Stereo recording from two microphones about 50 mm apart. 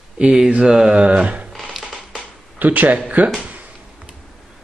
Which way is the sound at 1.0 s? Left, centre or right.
Right.